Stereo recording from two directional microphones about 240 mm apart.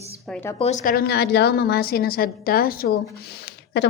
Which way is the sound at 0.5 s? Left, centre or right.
Left.